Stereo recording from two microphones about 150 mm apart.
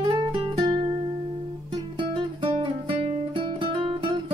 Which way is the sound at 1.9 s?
35° right (ahead or behind).